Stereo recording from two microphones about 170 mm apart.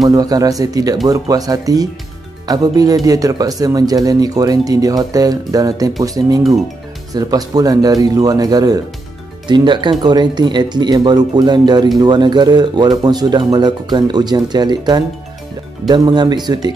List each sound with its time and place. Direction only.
0.1 s speech: 20° right (ahead or behind)